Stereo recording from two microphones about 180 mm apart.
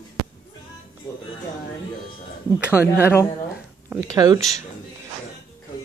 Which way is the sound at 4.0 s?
20° right (ahead or behind).